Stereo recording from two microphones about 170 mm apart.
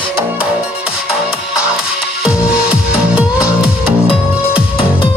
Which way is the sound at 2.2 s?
5° right (ahead or behind).